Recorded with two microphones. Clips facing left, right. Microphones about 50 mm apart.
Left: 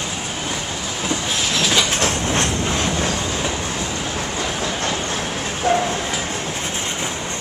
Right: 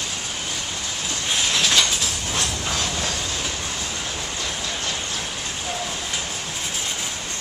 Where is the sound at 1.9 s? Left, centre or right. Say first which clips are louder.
Left 7 dB; left.